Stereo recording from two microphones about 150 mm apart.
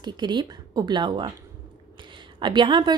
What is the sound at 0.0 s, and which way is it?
Speech, 30° right (ahead or behind).